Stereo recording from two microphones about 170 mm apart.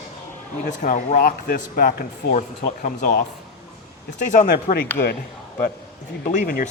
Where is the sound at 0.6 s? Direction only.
50° left (ahead or behind).